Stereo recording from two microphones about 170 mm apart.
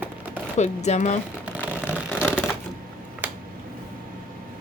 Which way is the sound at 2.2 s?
10° left (ahead or behind).